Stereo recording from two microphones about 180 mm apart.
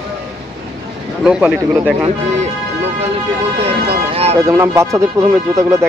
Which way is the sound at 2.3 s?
40° right (ahead or behind).